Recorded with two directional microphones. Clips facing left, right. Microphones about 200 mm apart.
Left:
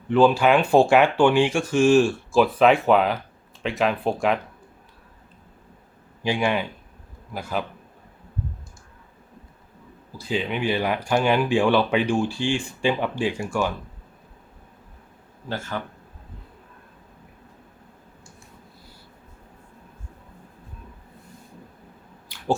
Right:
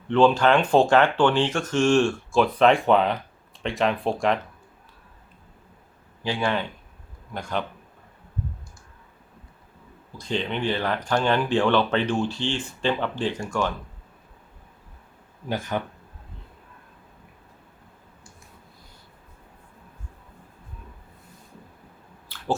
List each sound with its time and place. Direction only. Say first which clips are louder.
0.1 s speech: left 1 dB; 5° left (ahead or behind)
6.2 s speech: left 2 dB; 15° left (ahead or behind)
10.1 s speech: left 1 dB; 5° left (ahead or behind)
15.4 s speech: right 3 dB; 15° right (ahead or behind)
22.3 s chewing: right 1 dB; 15° left (ahead or behind)